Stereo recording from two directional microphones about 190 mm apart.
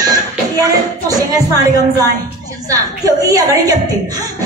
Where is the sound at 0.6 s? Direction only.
20° right (ahead or behind).